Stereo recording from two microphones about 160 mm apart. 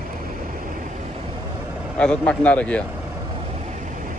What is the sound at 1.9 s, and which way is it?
Speech, 5° left (ahead or behind).